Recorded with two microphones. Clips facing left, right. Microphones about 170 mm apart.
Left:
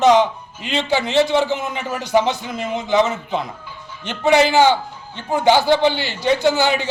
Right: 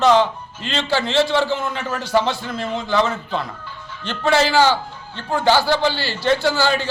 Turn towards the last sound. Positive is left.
turn(degrees=20)  # may be behind; listen again after turning